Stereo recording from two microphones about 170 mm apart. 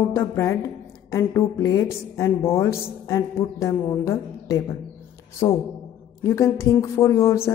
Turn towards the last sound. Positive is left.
turn(degrees=15)  # may be behind; listen again after turning